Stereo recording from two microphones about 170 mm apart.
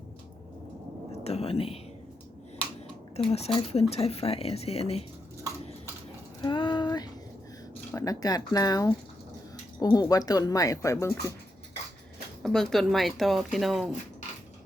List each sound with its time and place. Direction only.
1.2 s speech: 35° left (ahead or behind)
3.2 s speech: 35° left (ahead or behind)
6.4 s a sound: 25° left (ahead or behind)
7.9 s speech: 20° left (ahead or behind)
12.4 s speech: centre (ahead or behind)